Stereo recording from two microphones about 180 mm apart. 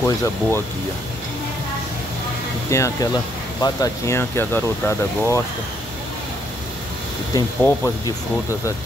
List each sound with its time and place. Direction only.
0.0 s speech: 15° left (ahead or behind)
2.7 s speech: 15° left (ahead or behind)
7.3 s speech: 15° left (ahead or behind)